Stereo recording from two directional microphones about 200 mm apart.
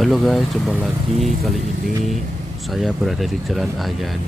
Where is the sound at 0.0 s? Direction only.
Centre (ahead or behind).